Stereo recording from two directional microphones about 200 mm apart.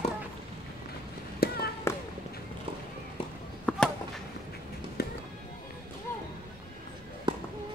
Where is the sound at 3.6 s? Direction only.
5° left (ahead or behind).